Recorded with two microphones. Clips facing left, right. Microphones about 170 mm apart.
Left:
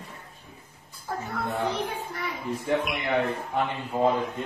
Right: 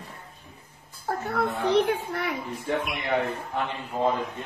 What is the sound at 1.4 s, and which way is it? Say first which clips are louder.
Speech: right 6 dB; 70° right (ahead or behind).